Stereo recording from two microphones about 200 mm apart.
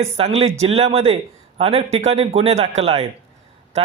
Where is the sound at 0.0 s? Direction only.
30° right (ahead or behind).